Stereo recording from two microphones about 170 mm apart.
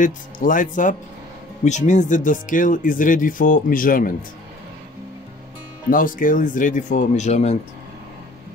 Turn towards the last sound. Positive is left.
turn(degrees=40)  # may be behind; listen again after turning